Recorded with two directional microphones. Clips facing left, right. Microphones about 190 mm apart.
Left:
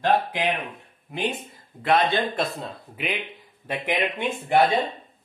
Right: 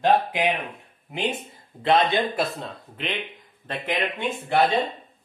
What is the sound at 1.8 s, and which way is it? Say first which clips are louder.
Speech: right 1 dB; 25° right (ahead or behind).